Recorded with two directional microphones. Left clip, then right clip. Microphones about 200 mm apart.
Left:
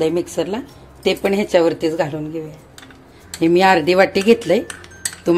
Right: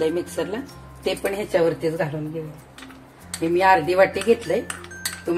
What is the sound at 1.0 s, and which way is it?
Speech, 45° left (ahead or behind).